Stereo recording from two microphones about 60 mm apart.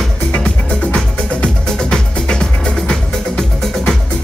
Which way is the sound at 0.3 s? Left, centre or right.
Centre.